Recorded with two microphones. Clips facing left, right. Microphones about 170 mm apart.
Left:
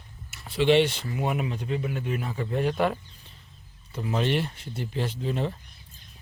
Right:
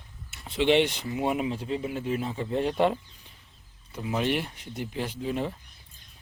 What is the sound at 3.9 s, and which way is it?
Speech, 10° right (ahead or behind).